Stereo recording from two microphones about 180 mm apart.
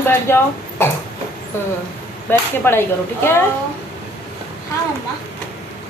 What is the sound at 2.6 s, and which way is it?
Speech, 10° left (ahead or behind).